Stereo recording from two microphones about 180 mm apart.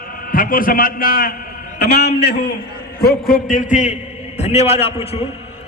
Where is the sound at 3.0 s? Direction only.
55° left (ahead or behind); by 5.3 s 35° left (ahead or behind).